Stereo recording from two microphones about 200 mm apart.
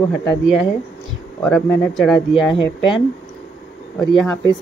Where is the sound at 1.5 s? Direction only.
5° left (ahead or behind).